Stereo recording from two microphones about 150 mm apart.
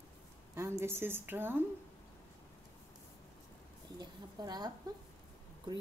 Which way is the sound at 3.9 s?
25° right (ahead or behind).